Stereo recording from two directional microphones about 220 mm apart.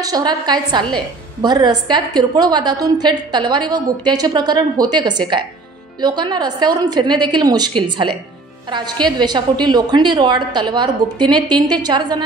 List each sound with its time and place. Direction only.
0.0 s a woman's voice: 15° right (ahead or behind)